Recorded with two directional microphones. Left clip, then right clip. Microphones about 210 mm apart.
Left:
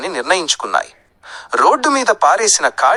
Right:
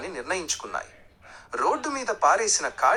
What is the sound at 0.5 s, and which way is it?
Speech, 35° left (ahead or behind).